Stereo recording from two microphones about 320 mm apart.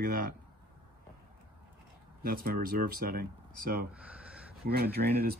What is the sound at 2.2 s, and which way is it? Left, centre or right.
Speech, right.